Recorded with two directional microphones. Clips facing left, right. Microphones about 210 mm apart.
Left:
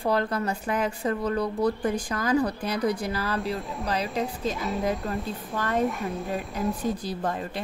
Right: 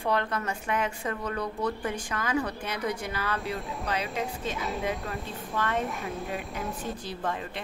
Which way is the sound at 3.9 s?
35° left (ahead or behind).